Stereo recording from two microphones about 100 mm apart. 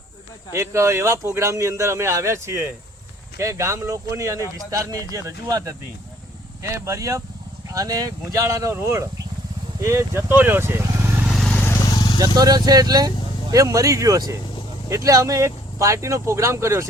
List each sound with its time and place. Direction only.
0.5 s a man's voice: 25° right (ahead or behind)
11.4 s vehicle: 15° left (ahead or behind)
12.2 s speech: 40° right (ahead or behind)